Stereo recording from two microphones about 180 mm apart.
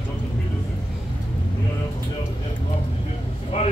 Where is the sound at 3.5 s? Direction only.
30° left (ahead or behind).